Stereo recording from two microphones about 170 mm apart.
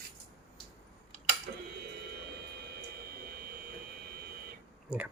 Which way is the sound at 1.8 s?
70° right (ahead or behind).